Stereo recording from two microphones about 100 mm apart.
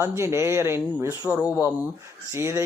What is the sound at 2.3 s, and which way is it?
Speech, 25° right (ahead or behind).